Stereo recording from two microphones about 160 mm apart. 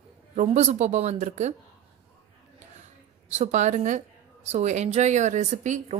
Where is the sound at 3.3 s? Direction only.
45° right (ahead or behind).